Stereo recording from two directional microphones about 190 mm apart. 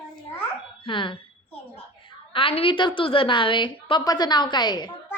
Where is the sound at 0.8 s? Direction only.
25° left (ahead or behind).